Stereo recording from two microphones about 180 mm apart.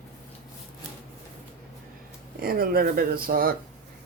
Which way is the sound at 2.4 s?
55° right (ahead or behind).